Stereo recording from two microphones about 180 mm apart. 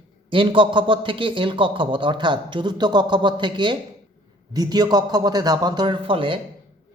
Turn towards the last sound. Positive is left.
turn(degrees=-30)  # may be behind; listen again after turning